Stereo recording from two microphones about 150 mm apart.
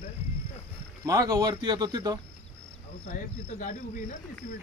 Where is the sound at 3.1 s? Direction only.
65° left (ahead or behind).